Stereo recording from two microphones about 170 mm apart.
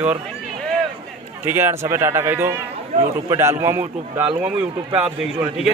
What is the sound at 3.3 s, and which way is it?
A man's voice, 15° right (ahead or behind).